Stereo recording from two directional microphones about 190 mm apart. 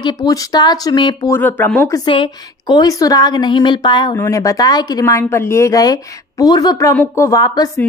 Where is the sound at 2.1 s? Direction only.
25° left (ahead or behind).